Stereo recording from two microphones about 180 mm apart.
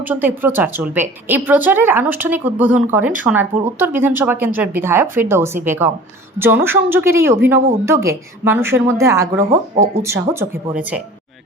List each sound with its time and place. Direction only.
0.0 s a woman's voice: 10° right (ahead or behind)